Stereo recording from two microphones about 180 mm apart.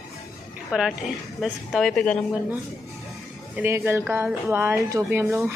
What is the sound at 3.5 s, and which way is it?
Speech, 10° right (ahead or behind).